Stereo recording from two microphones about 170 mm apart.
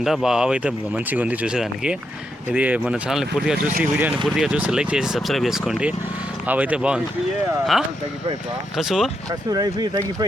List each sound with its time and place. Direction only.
0.0 s speech: centre (ahead or behind)
8.8 s speech: centre (ahead or behind)
9.5 s speech: 20° right (ahead or behind)